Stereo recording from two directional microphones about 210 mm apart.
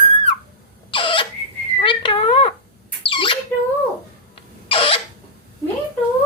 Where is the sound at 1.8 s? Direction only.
25° left (ahead or behind).